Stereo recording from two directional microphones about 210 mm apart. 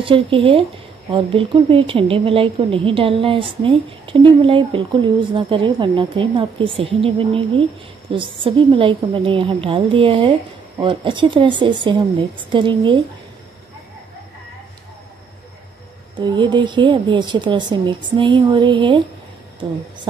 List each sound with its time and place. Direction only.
0.0 s a woman's voice: 25° right (ahead or behind)
16.2 s a woman's voice: 20° right (ahead or behind)